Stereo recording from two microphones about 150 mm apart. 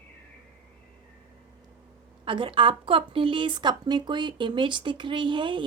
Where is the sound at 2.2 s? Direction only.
35° right (ahead or behind).